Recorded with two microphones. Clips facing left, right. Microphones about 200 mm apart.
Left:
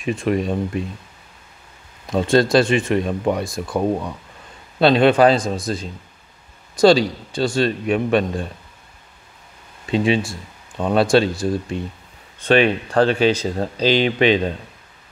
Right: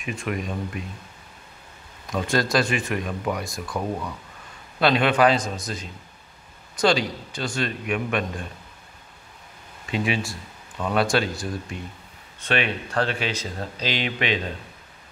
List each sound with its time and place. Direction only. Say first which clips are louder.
0.0 s speech: left 9 dB; 30° left (ahead or behind)
2.0 s speech: left 8 dB; 30° left (ahead or behind)
9.8 s speech: left 7 dB; 30° left (ahead or behind)